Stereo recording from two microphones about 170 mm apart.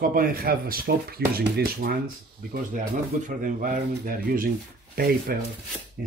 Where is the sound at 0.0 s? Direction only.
60° right (ahead or behind).